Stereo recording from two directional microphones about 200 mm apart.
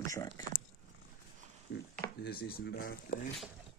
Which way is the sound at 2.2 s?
50° left (ahead or behind).